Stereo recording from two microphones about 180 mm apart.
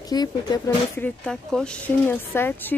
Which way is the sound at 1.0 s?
5° left (ahead or behind).